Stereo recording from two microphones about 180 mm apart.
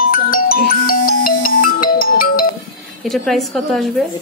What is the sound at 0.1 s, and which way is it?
Music, 55° left (ahead or behind).